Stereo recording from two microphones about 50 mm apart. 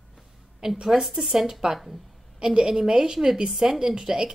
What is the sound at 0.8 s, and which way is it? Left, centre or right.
A woman's voice, centre.